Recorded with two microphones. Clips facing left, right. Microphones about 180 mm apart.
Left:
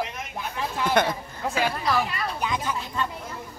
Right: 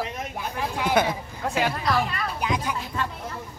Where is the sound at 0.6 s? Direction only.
10° right (ahead or behind).